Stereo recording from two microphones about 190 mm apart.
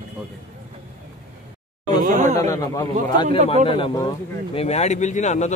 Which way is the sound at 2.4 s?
15° left (ahead or behind).